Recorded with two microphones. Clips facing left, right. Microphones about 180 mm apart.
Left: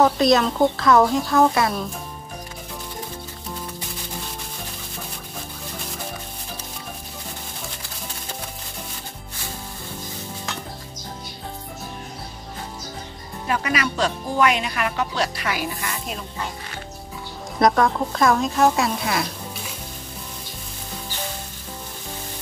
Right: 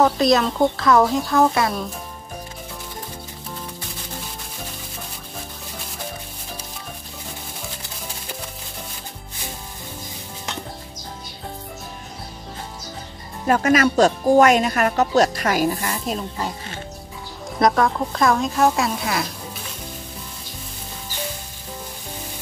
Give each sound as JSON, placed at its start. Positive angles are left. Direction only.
{"t": 0.0, "sound": "a woman's voice", "side_deg": 0}
{"t": 13.5, "sound": "speech", "side_deg": -45}
{"t": 17.6, "sound": "a woman's voice", "side_deg": 0}